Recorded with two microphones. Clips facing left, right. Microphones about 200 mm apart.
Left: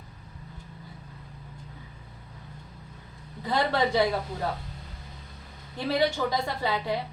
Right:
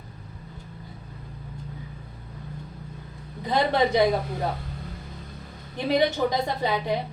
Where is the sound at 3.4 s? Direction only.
20° right (ahead or behind).